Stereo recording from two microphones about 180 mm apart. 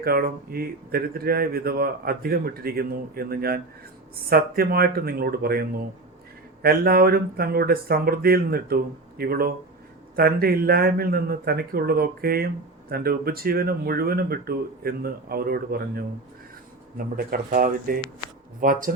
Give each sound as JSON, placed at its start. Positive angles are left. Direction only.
{"t": 0.0, "sound": "speech", "side_deg": -55}
{"t": 17.2, "sound": "speech", "side_deg": -55}